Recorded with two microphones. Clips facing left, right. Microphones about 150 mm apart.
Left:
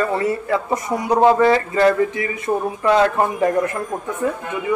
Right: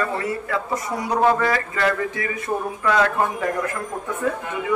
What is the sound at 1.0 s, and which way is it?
Speech, 20° left (ahead or behind).